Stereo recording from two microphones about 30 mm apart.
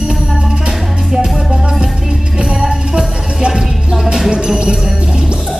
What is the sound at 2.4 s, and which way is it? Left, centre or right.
Music, right.